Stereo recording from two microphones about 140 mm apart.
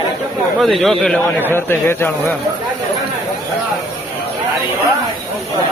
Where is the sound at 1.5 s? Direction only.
15° left (ahead or behind).